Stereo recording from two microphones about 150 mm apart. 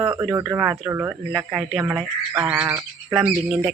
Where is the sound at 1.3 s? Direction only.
5° right (ahead or behind).